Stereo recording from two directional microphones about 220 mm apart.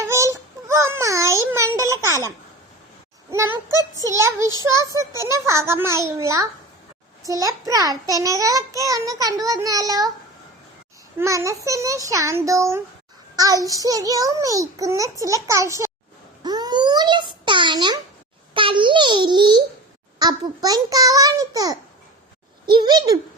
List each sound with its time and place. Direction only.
0.0 s a sound: 15° right (ahead or behind)
1.9 s a child's voice: 15° right (ahead or behind)
3.3 s a child's voice: 15° right (ahead or behind)
11.2 s a child's voice: 15° right (ahead or behind)
16.4 s a sound: 20° right (ahead or behind)
18.5 s a child's voice: 20° right (ahead or behind)